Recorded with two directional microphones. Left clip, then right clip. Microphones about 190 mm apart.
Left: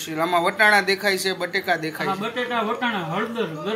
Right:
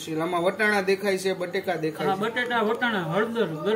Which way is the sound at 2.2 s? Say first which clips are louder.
Even; 30° left (ahead or behind).